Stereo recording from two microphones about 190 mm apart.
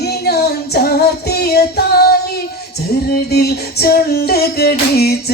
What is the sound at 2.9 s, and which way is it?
Female singing, 55° left (ahead or behind).